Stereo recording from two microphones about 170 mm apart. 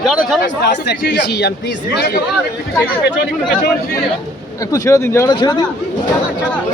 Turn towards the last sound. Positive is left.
turn(degrees=25)  # may be behind; listen again after turning